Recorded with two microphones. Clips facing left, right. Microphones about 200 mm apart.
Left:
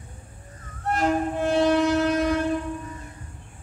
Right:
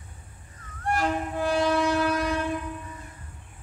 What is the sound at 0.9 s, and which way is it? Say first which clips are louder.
Wind instrument: left 4 dB; 25° left (ahead or behind).